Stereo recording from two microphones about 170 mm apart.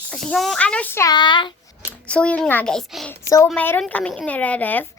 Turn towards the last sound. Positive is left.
turn(degrees=10)  # may be behind; listen again after turning